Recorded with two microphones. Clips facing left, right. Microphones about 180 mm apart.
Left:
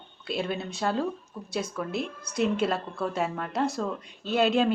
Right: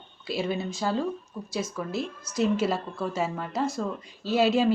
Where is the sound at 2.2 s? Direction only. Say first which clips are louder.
Even; 60° left (ahead or behind).